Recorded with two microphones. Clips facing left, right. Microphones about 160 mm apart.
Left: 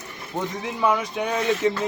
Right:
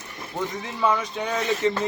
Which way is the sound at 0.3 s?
15° left (ahead or behind).